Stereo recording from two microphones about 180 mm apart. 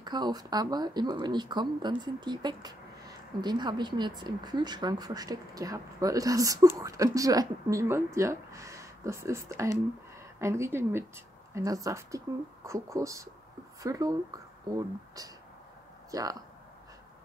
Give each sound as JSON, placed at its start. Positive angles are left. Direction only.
{"t": 0.0, "sound": "a woman's voice", "side_deg": -25}
{"t": 16.1, "sound": "a woman's voice", "side_deg": -20}